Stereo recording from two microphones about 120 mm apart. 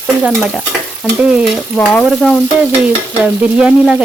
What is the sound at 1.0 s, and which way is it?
Frying, 5° right (ahead or behind).